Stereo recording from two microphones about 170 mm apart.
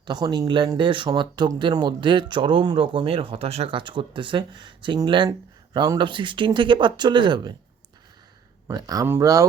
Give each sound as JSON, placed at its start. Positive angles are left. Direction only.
{"t": 0.0, "sound": "speech", "side_deg": -25}
{"t": 8.6, "sound": "speech", "side_deg": -20}